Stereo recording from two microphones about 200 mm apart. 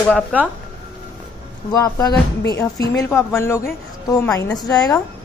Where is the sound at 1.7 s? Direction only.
20° left (ahead or behind).